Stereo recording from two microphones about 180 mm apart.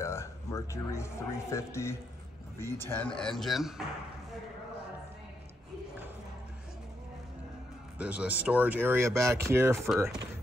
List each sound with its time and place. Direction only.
0.0 s speech: 15° left (ahead or behind)
3.2 s speech: centre (ahead or behind)
8.0 s speech: 5° right (ahead or behind)